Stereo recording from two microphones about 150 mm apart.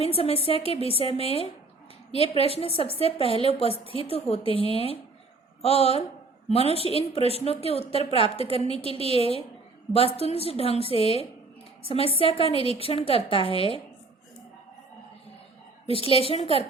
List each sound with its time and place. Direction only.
0.0 s a woman's voice: 40° left (ahead or behind)
15.9 s a woman's voice: 40° left (ahead or behind)